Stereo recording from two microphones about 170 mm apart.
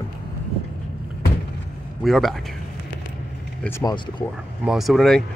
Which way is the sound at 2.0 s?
Centre (ahead or behind).